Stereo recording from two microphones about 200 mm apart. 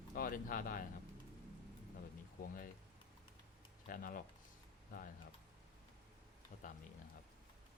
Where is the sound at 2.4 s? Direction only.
45° left (ahead or behind).